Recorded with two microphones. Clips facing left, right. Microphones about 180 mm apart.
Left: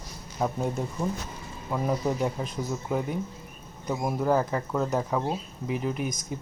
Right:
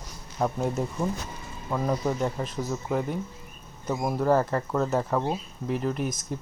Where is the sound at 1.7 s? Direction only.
10° left (ahead or behind).